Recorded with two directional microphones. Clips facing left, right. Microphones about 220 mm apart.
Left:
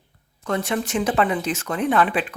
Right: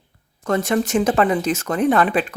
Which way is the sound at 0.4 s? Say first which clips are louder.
Right 5 dB; 45° right (ahead or behind).